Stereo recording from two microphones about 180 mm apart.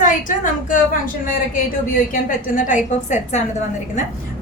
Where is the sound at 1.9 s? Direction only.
50° left (ahead or behind).